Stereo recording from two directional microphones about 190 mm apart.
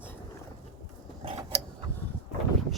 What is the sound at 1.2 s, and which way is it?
Mechanisms, 30° right (ahead or behind).